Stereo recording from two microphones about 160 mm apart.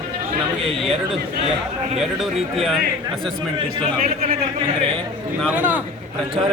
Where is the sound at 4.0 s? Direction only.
60° right (ahead or behind).